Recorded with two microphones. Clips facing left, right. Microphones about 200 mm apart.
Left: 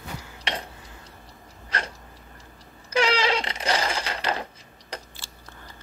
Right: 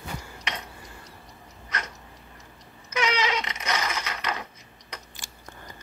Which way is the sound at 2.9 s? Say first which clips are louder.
Left 4 dB; 30° left (ahead or behind).